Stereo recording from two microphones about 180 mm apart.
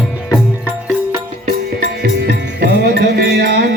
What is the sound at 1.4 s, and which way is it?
Music, 55° right (ahead or behind).